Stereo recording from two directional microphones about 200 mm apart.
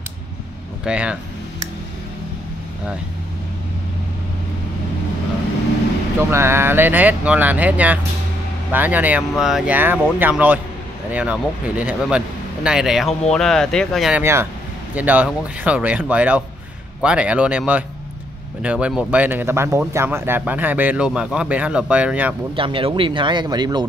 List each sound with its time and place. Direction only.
0.8 s speech: 5° right (ahead or behind)
6.3 s speech: 10° right (ahead or behind)
14.2 s speech: 10° right (ahead or behind)
22.6 s speech: 25° right (ahead or behind)